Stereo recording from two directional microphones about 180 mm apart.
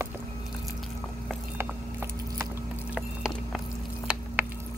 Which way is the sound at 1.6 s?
15° right (ahead or behind).